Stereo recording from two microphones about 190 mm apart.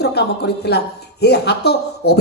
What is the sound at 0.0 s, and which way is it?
Speech, 60° left (ahead or behind).